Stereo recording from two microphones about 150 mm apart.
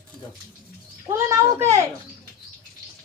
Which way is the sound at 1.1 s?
15° right (ahead or behind).